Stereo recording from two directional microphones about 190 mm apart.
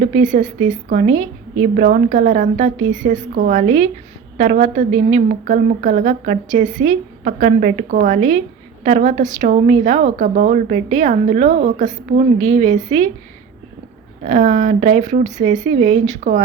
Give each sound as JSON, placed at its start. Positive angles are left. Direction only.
{"t": 0.0, "sound": "a woman's voice", "side_deg": -40}
{"t": 14.3, "sound": "a woman's voice", "side_deg": -40}